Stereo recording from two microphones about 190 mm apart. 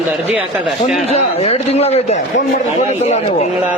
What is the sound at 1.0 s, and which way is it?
Speech, 35° left (ahead or behind).